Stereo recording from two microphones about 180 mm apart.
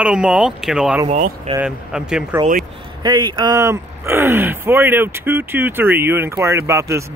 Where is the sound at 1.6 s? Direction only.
5° right (ahead or behind).